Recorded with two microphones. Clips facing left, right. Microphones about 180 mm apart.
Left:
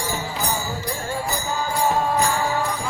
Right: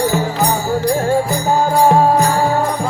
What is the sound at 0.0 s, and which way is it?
Music, 65° right (ahead or behind).